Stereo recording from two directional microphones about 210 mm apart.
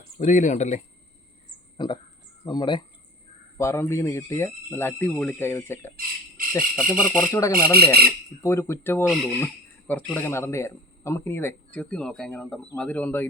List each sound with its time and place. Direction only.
0.2 s speech: 35° left (ahead or behind)
1.8 s speech: 20° left (ahead or behind)
6.0 s squawk: 40° right (ahead or behind)
6.6 s speech: 40° right (ahead or behind)
7.1 s speech: 15° left (ahead or behind)
7.5 s speech: 45° right (ahead or behind)
8.4 s speech: 10° left (ahead or behind)